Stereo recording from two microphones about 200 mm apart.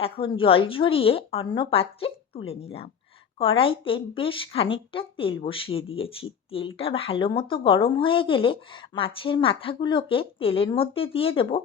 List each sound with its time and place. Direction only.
0.0 s speech: 25° left (ahead or behind)